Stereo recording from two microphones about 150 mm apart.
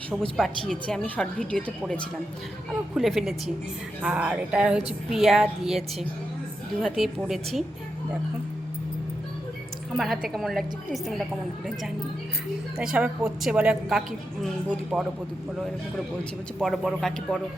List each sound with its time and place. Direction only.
0.2 s speech: centre (ahead or behind)
2.9 s speech: centre (ahead or behind)
10.0 s speech: centre (ahead or behind)
12.7 s speech: 5° right (ahead or behind)
16.6 s speech: centre (ahead or behind)